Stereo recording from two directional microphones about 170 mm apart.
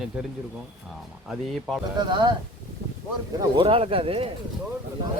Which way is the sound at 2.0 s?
25° right (ahead or behind).